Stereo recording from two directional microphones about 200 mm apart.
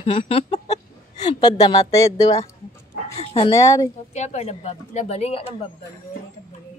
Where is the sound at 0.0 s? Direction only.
25° left (ahead or behind).